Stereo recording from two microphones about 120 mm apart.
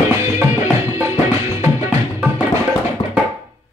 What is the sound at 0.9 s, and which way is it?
Music, 20° right (ahead or behind).